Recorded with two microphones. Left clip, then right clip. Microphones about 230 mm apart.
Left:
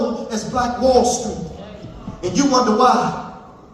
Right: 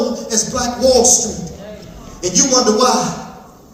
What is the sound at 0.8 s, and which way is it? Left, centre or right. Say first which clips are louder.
Speech: right 4 dB; right.